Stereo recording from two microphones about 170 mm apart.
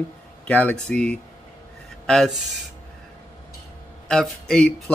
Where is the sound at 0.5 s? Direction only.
10° left (ahead or behind).